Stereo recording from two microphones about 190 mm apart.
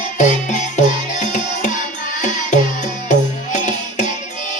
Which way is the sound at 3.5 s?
40° left (ahead or behind).